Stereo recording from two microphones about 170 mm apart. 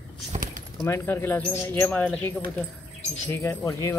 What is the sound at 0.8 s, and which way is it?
Speech, 15° left (ahead or behind).